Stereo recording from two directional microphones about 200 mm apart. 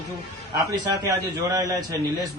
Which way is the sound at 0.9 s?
20° right (ahead or behind).